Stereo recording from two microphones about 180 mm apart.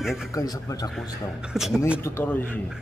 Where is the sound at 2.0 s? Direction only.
10° left (ahead or behind).